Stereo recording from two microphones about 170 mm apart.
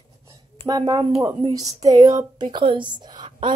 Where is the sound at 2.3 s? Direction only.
30° right (ahead or behind).